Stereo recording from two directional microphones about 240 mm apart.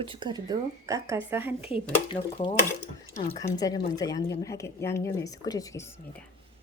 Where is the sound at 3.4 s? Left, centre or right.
Centre.